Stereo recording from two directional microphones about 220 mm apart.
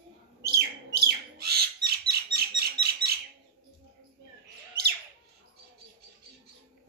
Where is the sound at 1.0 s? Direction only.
45° right (ahead or behind).